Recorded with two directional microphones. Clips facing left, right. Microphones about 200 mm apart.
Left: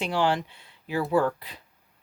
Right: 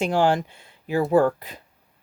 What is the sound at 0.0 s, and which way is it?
Speech, 45° right (ahead or behind).